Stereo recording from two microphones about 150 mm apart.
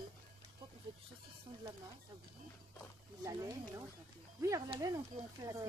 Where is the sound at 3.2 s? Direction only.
20° right (ahead or behind).